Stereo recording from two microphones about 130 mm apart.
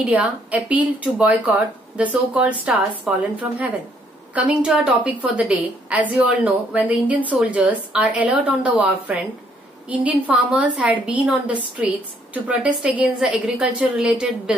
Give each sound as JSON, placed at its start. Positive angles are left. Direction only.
{"t": 0.0, "sound": "a woman's voice", "side_deg": -10}